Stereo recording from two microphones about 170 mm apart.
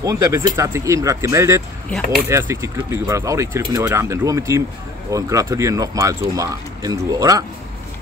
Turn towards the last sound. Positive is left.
turn(degrees=-20)  # may be behind; listen again after turning